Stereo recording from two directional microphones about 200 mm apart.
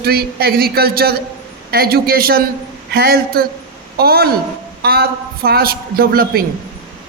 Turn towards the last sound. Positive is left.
turn(degrees=-50)  # may be behind; listen again after turning